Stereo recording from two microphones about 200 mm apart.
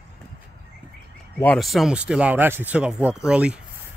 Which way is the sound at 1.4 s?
5° left (ahead or behind).